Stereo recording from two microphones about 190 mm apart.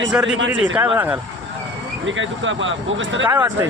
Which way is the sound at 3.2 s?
10° right (ahead or behind).